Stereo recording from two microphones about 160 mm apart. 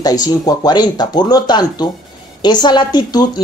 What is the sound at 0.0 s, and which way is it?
Speech, 25° left (ahead or behind).